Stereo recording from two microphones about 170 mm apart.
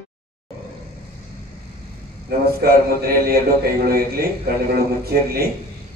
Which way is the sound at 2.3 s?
60° right (ahead or behind).